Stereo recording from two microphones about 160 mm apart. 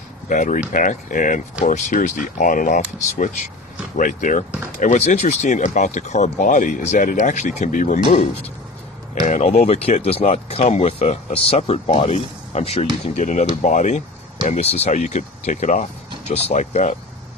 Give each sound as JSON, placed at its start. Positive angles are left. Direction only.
{"t": 0.3, "sound": "speech", "side_deg": 50}
{"t": 8.0, "sound": "speech", "side_deg": 35}
{"t": 9.2, "sound": "speech", "side_deg": 50}